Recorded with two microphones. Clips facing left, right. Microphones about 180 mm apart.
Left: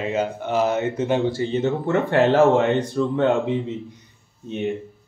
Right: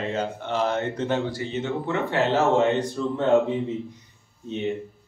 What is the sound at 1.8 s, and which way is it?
Speech, 55° left (ahead or behind).